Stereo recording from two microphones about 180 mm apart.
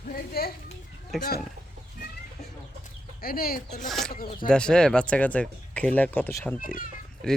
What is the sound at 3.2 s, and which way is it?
Speech, 55° left (ahead or behind).